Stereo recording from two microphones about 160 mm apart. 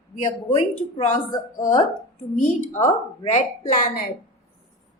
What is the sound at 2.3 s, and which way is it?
A woman's voice, 50° left (ahead or behind).